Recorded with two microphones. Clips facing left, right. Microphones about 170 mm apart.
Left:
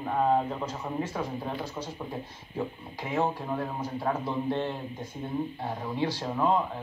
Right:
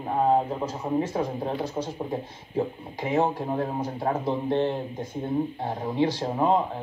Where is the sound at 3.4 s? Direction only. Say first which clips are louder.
Right 5 dB; 30° right (ahead or behind).